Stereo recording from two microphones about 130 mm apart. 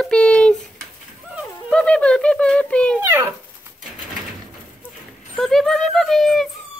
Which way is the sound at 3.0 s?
20° right (ahead or behind).